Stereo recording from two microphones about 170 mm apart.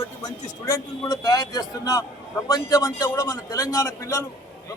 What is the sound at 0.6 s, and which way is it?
A man's voice, 20° left (ahead or behind).